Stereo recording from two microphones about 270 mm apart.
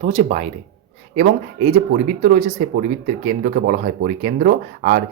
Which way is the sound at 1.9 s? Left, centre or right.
Right.